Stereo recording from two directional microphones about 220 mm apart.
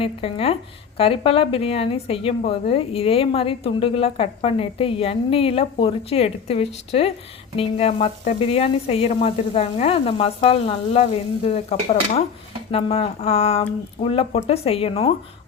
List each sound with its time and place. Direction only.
0.0 s a woman's voice: 25° left (ahead or behind)